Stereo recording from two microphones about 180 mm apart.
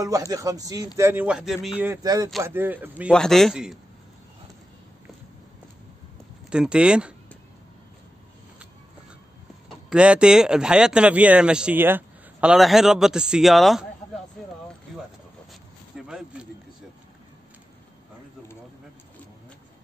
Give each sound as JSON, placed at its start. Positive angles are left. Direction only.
{"t": 0.0, "sound": "speech", "side_deg": -20}
{"t": 1.9, "sound": "speech", "side_deg": -15}
{"t": 3.1, "sound": "speech", "side_deg": 5}
{"t": 6.5, "sound": "speech", "side_deg": -5}
{"t": 9.8, "sound": "speech", "side_deg": -5}
{"t": 16.1, "sound": "speech", "side_deg": -5}